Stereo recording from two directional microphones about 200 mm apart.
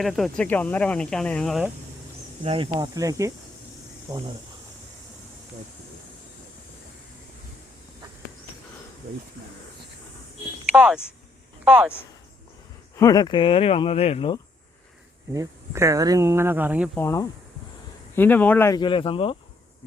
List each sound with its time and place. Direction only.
0.0 s speech: centre (ahead or behind)
2.4 s speech: 25° right (ahead or behind)
10.8 s speech: 5° right (ahead or behind)
13.0 s speech: 20° left (ahead or behind)
15.3 s speech: 15° right (ahead or behind)
16.9 s speech: 15° left (ahead or behind)
18.8 s speech: 25° left (ahead or behind)